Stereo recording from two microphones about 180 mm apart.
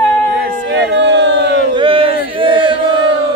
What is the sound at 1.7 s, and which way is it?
Battle cry, 30° right (ahead or behind).